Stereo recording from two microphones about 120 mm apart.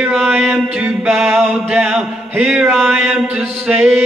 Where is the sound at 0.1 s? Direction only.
15° right (ahead or behind).